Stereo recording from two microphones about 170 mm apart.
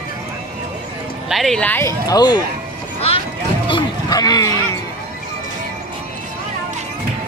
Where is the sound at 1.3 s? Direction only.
Centre (ahead or behind); by 2.4 s 25° left (ahead or behind).